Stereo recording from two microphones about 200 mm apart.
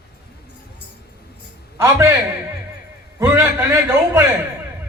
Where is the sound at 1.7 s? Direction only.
15° right (ahead or behind).